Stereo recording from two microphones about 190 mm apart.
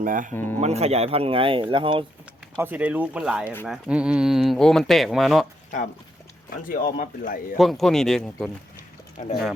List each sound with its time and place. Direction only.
0.0 s speech: 45° right (ahead or behind)
0.3 s speech: 10° left (ahead or behind)
0.6 s speech: 35° right (ahead or behind)
2.6 s speech: 10° right (ahead or behind)
6.7 s speech: 45° left (ahead or behind)
7.5 s speech: centre (ahead or behind)
9.1 s speech: 45° left (ahead or behind)